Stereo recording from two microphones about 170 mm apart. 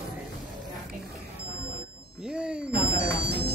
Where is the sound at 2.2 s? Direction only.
5° right (ahead or behind).